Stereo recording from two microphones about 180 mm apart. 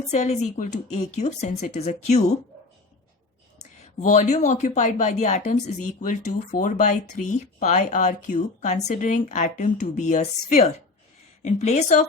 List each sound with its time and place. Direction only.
0.1 s speech: 40° left (ahead or behind)
4.0 s speech: 40° left (ahead or behind)